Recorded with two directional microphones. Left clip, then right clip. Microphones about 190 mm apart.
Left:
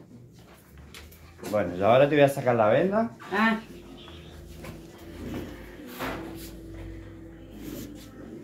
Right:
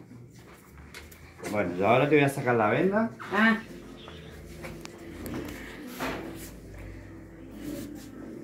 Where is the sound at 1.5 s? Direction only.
25° left (ahead or behind).